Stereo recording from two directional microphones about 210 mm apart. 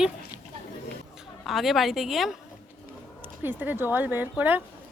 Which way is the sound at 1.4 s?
Centre (ahead or behind).